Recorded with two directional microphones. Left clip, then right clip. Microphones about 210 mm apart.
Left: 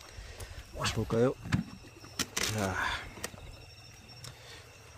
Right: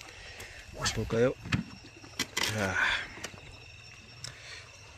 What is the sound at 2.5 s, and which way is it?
Speech, 15° left (ahead or behind).